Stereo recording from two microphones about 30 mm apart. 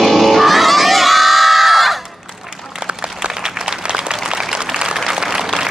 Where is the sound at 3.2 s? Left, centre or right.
Right.